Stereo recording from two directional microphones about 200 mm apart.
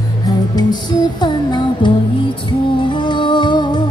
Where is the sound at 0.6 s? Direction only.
20° left (ahead or behind).